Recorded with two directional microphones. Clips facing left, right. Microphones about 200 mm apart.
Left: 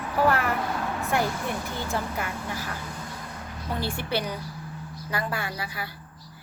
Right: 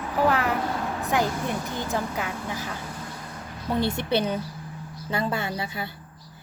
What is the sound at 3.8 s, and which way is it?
Speech, 20° right (ahead or behind).